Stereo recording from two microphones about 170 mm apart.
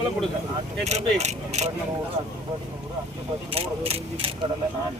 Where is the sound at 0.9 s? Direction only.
40° right (ahead or behind).